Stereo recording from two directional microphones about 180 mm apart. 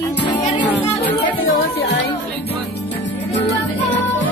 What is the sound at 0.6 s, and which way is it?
Music, 70° left (ahead or behind).